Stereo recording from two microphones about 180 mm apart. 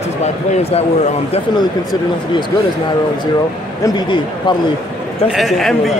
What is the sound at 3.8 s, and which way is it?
Speech, 25° left (ahead or behind).